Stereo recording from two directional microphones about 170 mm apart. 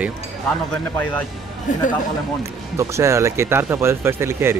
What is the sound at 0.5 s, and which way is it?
Speech, 5° left (ahead or behind).